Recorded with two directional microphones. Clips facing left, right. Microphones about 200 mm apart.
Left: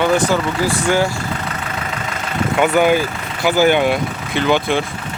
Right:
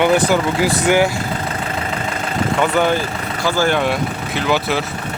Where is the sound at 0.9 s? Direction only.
20° right (ahead or behind).